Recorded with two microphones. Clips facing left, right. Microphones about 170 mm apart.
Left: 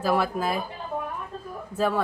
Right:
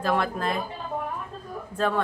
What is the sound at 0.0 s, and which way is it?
Speech, 5° left (ahead or behind).